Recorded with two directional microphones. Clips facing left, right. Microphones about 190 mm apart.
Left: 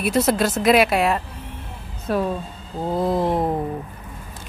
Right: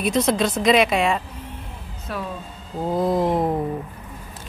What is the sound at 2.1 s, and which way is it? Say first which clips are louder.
Speech: left 8 dB; 40° left (ahead or behind).